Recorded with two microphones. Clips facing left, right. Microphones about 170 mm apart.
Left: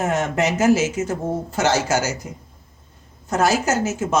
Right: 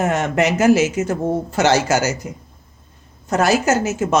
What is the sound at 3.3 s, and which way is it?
Speech, 70° right (ahead or behind).